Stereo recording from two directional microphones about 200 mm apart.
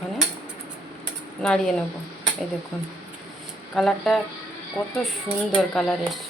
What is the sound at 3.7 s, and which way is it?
Speech, centre (ahead or behind).